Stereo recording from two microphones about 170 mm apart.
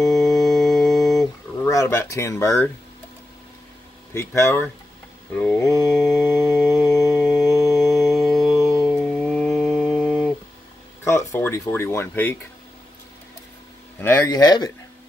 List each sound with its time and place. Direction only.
0.5 s music: centre (ahead or behind)
1.6 s speech: 15° left (ahead or behind)
4.1 s speech: 15° left (ahead or behind)
5.7 s mantra: 5° left (ahead or behind)
6.8 s music: 20° left (ahead or behind)
7.1 s mantra: centre (ahead or behind)
7.7 s music: centre (ahead or behind)
8.6 s mantra: centre (ahead or behind)
11.1 s speech: 15° left (ahead or behind)
14.0 s speech: 20° left (ahead or behind)